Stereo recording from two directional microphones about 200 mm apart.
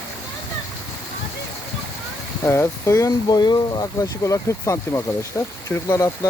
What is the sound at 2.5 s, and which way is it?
Speech, 15° left (ahead or behind).